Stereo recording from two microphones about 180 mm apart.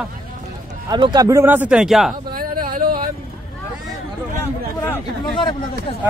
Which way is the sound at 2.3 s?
55° right (ahead or behind).